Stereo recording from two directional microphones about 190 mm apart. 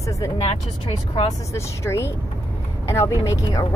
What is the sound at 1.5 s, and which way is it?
Speech, 15° left (ahead or behind).